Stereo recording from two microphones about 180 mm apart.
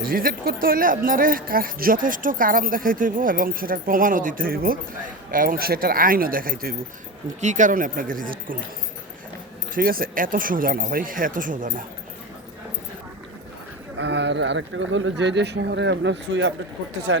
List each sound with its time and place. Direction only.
0.0 s speech: 55° right (ahead or behind)
9.7 s speech: 55° right (ahead or behind)
13.9 s speech: 75° right (ahead or behind)